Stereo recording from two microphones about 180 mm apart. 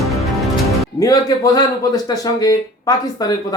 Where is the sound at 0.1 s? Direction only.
Centre (ahead or behind).